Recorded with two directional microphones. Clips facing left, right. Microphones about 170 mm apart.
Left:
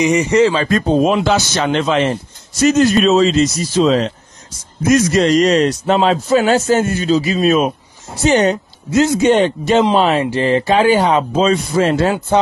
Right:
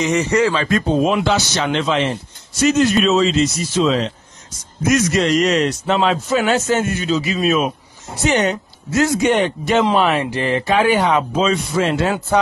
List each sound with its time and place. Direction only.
0.0 s speech: 15° left (ahead or behind)
0.6 s a man's voice: 35° left (ahead or behind)
12.3 s speech: 25° left (ahead or behind)